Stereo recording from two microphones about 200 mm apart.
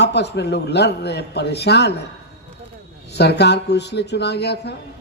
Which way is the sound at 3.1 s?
55° left (ahead or behind).